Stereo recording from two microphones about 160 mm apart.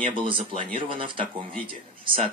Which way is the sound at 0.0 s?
30° right (ahead or behind).